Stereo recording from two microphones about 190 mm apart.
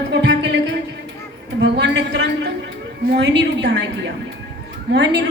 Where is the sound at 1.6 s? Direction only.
65° right (ahead or behind).